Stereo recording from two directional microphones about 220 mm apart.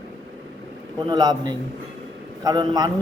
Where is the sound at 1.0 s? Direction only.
20° right (ahead or behind).